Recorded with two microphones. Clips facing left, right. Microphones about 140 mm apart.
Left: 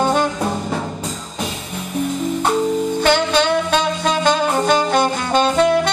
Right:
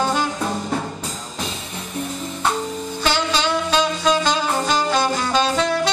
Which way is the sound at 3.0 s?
55° left (ahead or behind).